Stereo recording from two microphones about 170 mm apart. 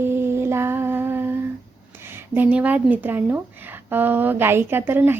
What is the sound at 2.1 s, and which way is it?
Speech, 10° right (ahead or behind).